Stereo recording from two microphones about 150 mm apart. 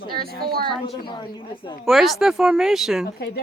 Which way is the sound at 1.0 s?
30° left (ahead or behind).